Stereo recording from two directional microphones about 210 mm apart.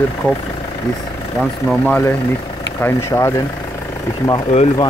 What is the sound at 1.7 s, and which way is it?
Speech, 5° left (ahead or behind).